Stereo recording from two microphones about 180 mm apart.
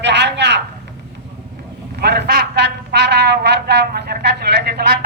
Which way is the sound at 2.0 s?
65° right (ahead or behind).